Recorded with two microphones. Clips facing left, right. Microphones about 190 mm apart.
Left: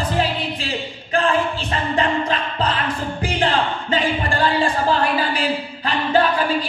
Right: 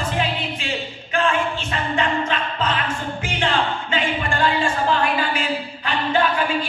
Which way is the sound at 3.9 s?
35° left (ahead or behind).